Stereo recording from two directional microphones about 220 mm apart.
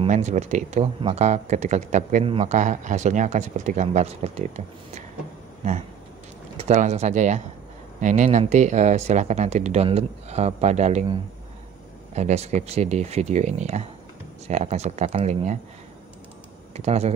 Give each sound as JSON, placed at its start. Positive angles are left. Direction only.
{"t": 0.0, "sound": "speech", "side_deg": -30}
{"t": 6.5, "sound": "speech", "side_deg": -30}
{"t": 16.7, "sound": "speech", "side_deg": -30}